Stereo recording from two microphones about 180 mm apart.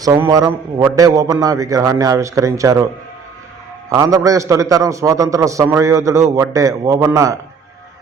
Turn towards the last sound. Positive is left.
turn(degrees=-20)  # may be behind; listen again after turning